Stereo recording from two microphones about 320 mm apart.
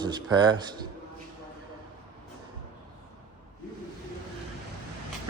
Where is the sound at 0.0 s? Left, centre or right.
Centre.